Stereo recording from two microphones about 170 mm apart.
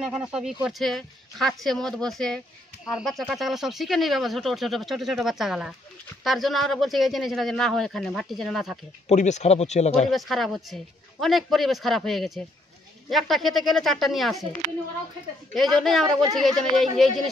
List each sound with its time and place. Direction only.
0.0 s speech: 5° right (ahead or behind)
9.1 s speech: 45° left (ahead or behind)
10.1 s speech: centre (ahead or behind)
15.5 s speech: centre (ahead or behind)